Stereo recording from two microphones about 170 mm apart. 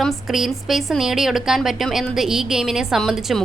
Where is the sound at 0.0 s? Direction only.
Centre (ahead or behind).